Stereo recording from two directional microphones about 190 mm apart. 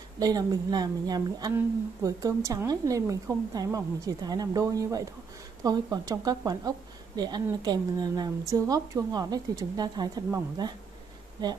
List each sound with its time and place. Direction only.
0.2 s a woman's voice: 20° right (ahead or behind)